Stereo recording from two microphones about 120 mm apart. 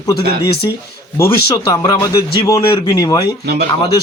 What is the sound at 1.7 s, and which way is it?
A man's voice, 30° left (ahead or behind).